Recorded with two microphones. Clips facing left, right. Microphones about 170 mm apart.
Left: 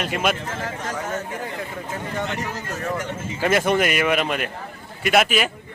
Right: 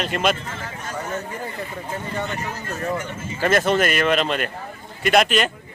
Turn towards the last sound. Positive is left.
turn(degrees=5)  # may be behind; listen again after turning